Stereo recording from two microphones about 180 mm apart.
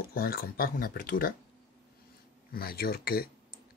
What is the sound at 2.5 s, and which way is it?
Speech, 55° left (ahead or behind).